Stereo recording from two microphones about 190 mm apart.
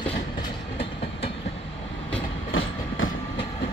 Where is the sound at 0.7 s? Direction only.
30° left (ahead or behind).